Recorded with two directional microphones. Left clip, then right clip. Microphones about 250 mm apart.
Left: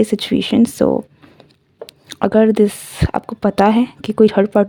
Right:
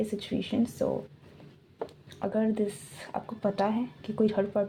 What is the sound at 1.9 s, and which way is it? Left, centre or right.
Speech, left.